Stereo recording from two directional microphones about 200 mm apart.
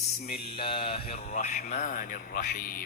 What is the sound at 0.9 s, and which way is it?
A man's voice, 30° left (ahead or behind).